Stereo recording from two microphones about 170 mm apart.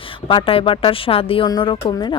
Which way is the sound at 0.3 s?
30° left (ahead or behind).